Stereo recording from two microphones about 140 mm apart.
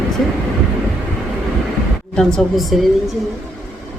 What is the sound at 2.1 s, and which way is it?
Speech, centre (ahead or behind).